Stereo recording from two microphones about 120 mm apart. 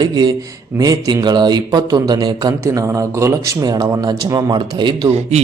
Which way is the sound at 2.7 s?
25° right (ahead or behind).